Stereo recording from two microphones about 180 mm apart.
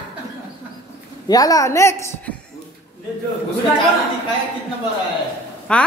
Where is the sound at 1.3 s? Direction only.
20° left (ahead or behind).